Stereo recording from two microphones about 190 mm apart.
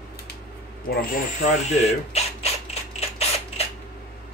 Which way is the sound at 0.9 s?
50° left (ahead or behind).